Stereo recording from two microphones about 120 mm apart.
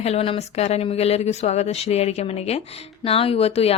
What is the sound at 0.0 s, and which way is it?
A woman's voice, 55° left (ahead or behind).